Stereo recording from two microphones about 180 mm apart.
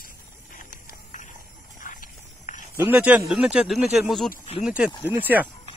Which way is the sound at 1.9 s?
50° left (ahead or behind).